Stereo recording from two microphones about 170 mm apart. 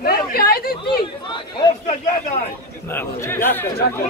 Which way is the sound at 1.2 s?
30° left (ahead or behind).